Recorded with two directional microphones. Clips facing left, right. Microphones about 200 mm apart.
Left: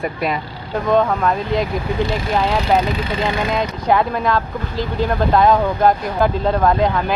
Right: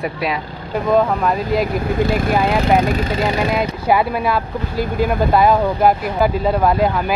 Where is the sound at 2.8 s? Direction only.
45° right (ahead or behind).